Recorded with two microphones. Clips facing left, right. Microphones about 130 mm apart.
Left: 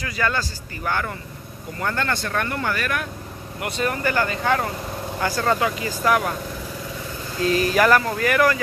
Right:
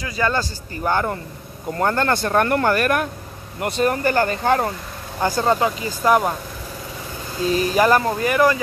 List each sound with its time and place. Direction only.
0.0 s speech: 20° right (ahead or behind)
1.8 s speech: 40° right (ahead or behind)
3.6 s speech: 40° right (ahead or behind)
5.2 s speech: 20° right (ahead or behind)
7.5 s speech: 25° right (ahead or behind)